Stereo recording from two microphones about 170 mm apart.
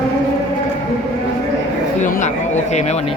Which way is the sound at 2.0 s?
50° left (ahead or behind).